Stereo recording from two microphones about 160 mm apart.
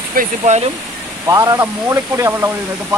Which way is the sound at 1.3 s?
20° right (ahead or behind).